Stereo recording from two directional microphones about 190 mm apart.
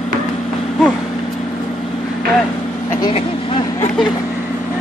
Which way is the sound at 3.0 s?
30° left (ahead or behind).